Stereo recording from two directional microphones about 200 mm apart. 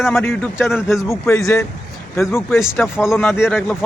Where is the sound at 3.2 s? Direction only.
10° left (ahead or behind).